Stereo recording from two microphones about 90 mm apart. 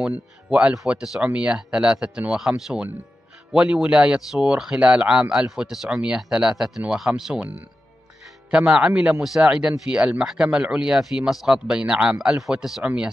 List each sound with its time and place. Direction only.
0.0 s speech: 10° right (ahead or behind)
3.5 s speech: 10° right (ahead or behind)
7.3 s speech: 15° right (ahead or behind)